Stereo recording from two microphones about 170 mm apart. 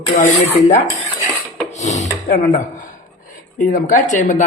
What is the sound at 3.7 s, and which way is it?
Speech, 50° left (ahead or behind).